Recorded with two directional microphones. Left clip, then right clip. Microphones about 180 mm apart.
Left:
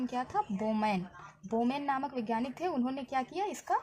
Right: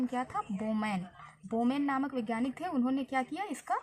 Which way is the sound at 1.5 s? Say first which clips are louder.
Even; 25° left (ahead or behind).